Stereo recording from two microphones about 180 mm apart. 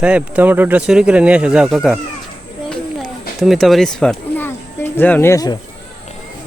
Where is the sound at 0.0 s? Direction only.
5° right (ahead or behind).